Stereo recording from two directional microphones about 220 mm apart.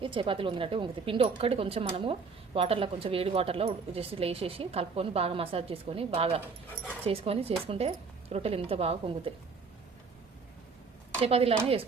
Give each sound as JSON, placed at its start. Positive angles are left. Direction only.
{"t": 0.0, "sound": "speech", "side_deg": -25}
{"t": 11.2, "sound": "speech", "side_deg": -25}